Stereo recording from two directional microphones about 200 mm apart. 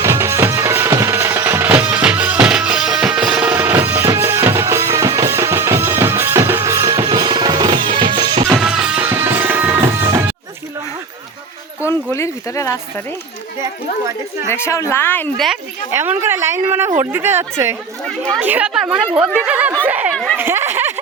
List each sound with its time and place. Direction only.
0.0 s music: 15° right (ahead or behind)
8.4 s music: 5° right (ahead or behind)
11.9 s a sound: 15° left (ahead or behind)
14.5 s speech: 15° left (ahead or behind)
15.9 s a woman's voice: 10° right (ahead or behind)